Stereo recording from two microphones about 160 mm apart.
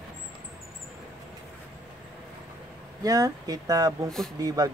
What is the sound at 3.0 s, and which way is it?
Speech, 20° right (ahead or behind).